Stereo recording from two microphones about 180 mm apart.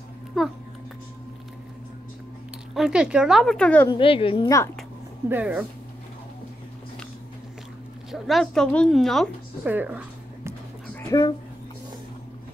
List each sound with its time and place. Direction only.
0.3 s a woman's voice: 5° right (ahead or behind)
2.7 s a woman's voice: 5° right (ahead or behind)
3.9 s a woman's voice: 30° left (ahead or behind)
5.3 s speech: 5° right (ahead or behind)
8.1 s a woman's voice: centre (ahead or behind)
9.7 s a sound: 10° right (ahead or behind)
11.0 s speech: 20° left (ahead or behind)